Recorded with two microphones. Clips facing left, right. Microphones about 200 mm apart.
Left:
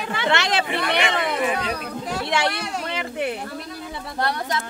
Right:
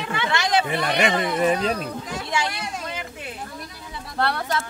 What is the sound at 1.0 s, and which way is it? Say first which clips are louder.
Speech: right 2 dB; 40° right (ahead or behind).